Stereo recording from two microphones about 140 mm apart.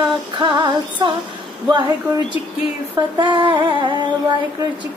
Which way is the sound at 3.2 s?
35° right (ahead or behind).